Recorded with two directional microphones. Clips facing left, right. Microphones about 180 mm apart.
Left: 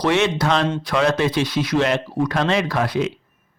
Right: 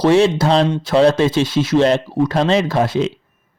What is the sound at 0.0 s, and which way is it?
Speech, 30° right (ahead or behind).